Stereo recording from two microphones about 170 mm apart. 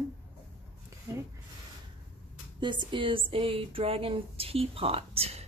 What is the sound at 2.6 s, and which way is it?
Speech, 25° right (ahead or behind).